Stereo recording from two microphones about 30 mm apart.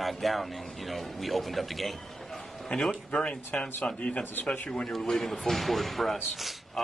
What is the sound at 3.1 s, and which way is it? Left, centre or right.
Speech, left.